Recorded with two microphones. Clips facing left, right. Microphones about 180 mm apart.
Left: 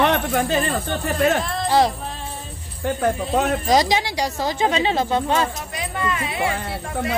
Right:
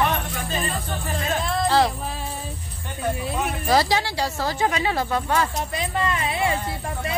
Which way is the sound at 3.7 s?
15° left (ahead or behind).